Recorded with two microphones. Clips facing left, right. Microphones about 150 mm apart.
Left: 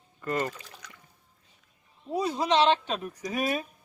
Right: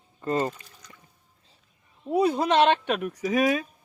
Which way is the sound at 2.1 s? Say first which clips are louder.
Right 4 dB; 55° right (ahead or behind).